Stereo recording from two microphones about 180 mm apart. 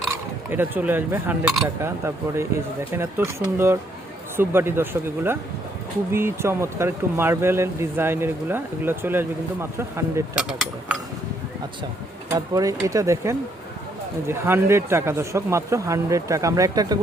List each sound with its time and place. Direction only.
0.1 s speech: 10° right (ahead or behind)
10.3 s speech: 5° right (ahead or behind)
12.3 s speech: 20° right (ahead or behind)